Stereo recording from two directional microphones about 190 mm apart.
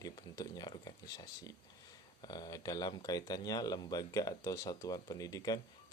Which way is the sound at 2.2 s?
20° left (ahead or behind).